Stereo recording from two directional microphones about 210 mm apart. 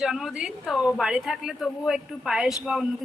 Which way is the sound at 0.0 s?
Centre (ahead or behind).